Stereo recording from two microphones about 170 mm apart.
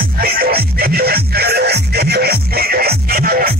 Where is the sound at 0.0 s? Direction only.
60° right (ahead or behind).